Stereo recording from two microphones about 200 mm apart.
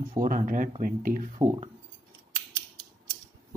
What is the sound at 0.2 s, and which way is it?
Speech, 40° right (ahead or behind).